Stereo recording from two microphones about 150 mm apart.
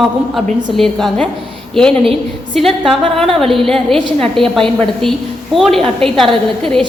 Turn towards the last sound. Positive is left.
turn(degrees=5)  # may be behind; listen again after turning